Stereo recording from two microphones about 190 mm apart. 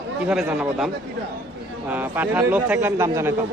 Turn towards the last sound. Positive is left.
turn(degrees=-15)  # may be behind; listen again after turning